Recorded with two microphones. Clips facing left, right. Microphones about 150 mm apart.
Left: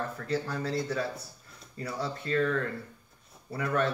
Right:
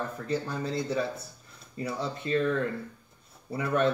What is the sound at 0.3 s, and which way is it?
Speech, 20° right (ahead or behind).